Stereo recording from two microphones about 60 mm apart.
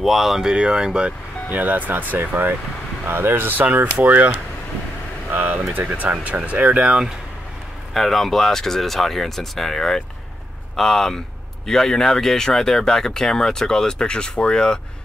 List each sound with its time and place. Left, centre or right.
0.0 s speech: centre
1.5 s speech: right
3.6 s speech: right
7.9 s speech: centre